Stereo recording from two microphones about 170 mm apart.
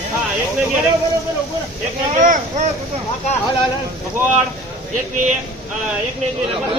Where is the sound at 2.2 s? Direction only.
50° right (ahead or behind).